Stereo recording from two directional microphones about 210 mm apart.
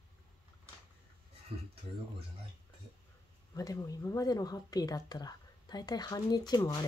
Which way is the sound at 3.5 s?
15° left (ahead or behind).